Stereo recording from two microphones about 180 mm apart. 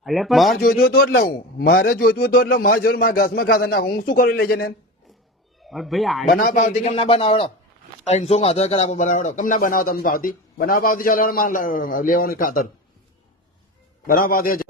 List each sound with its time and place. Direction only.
0.0 s a man's voice: centre (ahead or behind)
0.5 s a man's voice: 55° left (ahead or behind)
5.6 s a man's voice: centre (ahead or behind)
6.2 s a man's voice: 50° left (ahead or behind)
6.9 s a man's voice: 30° left (ahead or behind); by 12.7 s 50° left (ahead or behind)
14.1 s a man's voice: 55° left (ahead or behind)